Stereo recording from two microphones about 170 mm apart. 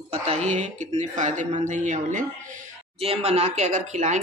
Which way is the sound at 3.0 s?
35° right (ahead or behind).